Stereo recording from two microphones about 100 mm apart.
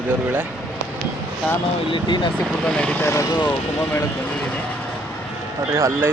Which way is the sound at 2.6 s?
10° left (ahead or behind).